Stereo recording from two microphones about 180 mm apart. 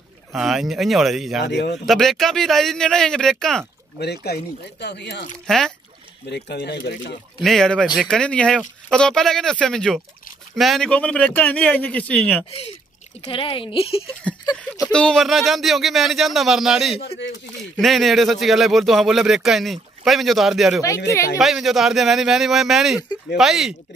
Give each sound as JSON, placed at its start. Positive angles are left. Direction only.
{"t": 0.3, "sound": "speech", "side_deg": 0}
{"t": 1.4, "sound": "speech", "side_deg": 70}
{"t": 1.9, "sound": "speech", "side_deg": 0}
{"t": 4.0, "sound": "speech", "side_deg": 65}
{"t": 6.2, "sound": "speech", "side_deg": 65}
{"t": 7.4, "sound": "speech", "side_deg": 5}
{"t": 13.2, "sound": "speech", "side_deg": 30}
{"t": 14.9, "sound": "speech", "side_deg": 5}